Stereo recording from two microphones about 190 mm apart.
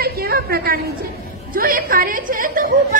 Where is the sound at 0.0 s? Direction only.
55° right (ahead or behind).